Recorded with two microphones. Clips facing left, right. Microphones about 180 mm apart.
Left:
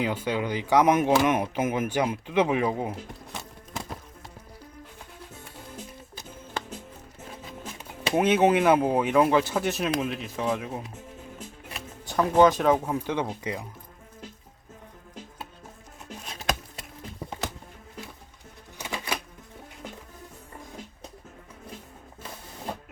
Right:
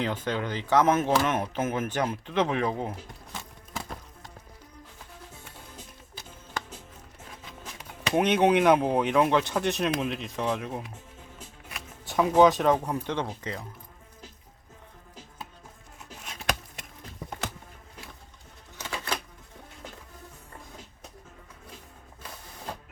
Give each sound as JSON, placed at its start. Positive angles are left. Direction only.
{"t": 0.0, "sound": "speech", "side_deg": 10}
{"t": 8.1, "sound": "speech", "side_deg": 5}
{"t": 12.0, "sound": "speech", "side_deg": 0}
{"t": 16.2, "sound": "a sound", "side_deg": 35}
{"t": 18.8, "sound": "typewriter", "side_deg": 15}